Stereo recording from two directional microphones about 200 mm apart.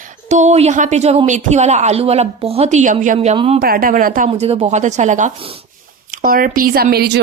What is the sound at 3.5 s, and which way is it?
Speech, 45° right (ahead or behind).